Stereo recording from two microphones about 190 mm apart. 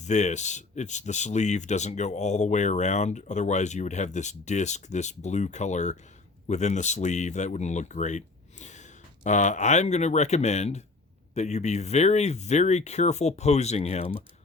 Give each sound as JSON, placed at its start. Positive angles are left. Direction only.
{"t": 0.0, "sound": "speech", "side_deg": 40}